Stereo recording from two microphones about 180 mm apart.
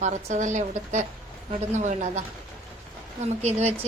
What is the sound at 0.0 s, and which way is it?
A woman's voice, 40° right (ahead or behind).